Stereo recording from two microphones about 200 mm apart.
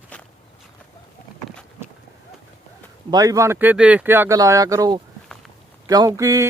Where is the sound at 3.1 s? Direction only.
15° right (ahead or behind).